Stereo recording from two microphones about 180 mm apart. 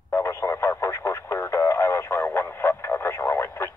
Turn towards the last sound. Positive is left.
turn(degrees=15)  # may be behind; listen again after turning